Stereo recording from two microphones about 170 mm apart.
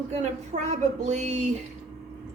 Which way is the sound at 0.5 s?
40° right (ahead or behind).